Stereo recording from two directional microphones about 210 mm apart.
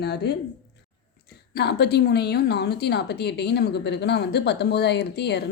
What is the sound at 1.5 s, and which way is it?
A woman's voice, 50° left (ahead or behind).